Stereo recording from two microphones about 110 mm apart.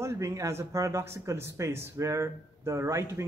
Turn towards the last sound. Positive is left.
turn(degrees=-25)  # may be behind; listen again after turning